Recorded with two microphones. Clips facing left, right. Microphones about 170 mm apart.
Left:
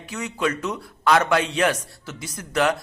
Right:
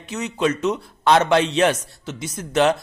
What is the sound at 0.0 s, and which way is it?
A man's voice, 20° right (ahead or behind).